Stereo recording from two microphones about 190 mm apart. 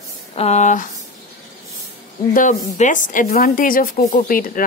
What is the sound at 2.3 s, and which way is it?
A woman's voice, 40° left (ahead or behind).